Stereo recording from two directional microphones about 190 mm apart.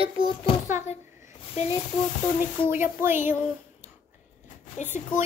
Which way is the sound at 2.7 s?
10° right (ahead or behind).